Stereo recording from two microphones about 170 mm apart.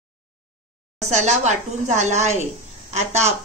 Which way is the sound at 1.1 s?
40° right (ahead or behind).